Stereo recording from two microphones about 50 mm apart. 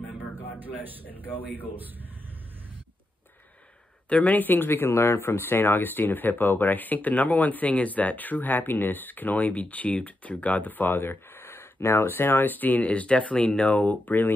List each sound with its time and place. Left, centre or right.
0.2 s a sound: left
0.7 s a man's voice: right
4.1 s speech: left